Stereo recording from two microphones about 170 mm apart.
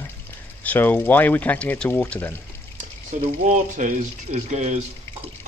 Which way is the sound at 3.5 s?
45° right (ahead or behind).